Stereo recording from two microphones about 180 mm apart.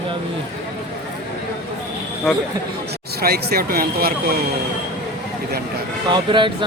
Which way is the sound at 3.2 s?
60° right (ahead or behind).